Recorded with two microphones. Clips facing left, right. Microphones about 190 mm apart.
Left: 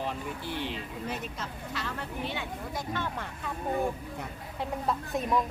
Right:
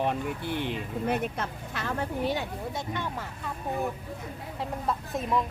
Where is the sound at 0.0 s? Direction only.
60° right (ahead or behind).